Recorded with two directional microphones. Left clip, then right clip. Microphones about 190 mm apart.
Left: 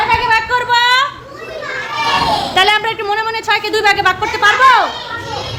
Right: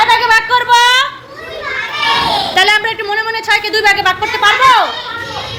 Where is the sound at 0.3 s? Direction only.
5° left (ahead or behind).